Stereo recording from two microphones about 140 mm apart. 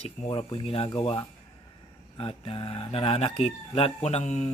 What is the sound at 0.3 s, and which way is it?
Speech, 45° left (ahead or behind).